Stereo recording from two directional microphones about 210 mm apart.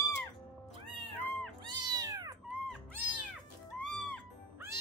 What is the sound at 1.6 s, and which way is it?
Cat, 20° right (ahead or behind).